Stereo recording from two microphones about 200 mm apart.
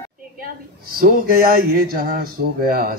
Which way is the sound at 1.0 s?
45° right (ahead or behind).